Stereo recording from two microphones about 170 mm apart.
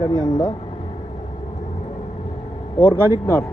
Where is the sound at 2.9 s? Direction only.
15° right (ahead or behind).